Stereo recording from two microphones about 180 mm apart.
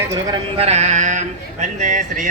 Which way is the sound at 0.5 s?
35° right (ahead or behind).